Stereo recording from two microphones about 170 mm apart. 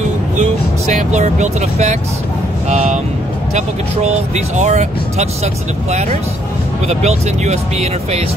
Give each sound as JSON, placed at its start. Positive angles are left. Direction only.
{"t": 0.4, "sound": "speech", "side_deg": -45}